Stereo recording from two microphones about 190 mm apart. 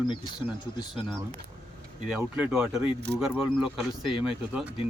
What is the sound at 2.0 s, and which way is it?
Speech, 5° right (ahead or behind).